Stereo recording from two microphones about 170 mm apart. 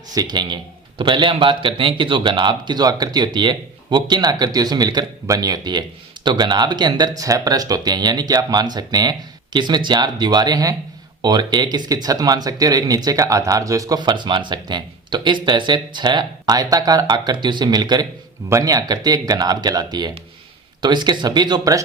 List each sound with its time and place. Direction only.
0.1 s speech: 25° right (ahead or behind)